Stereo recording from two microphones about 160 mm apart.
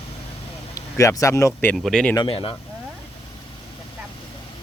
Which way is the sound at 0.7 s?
20° left (ahead or behind).